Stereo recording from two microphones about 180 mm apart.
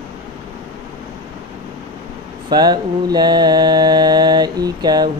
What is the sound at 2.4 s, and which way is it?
Mantra, 25° right (ahead or behind).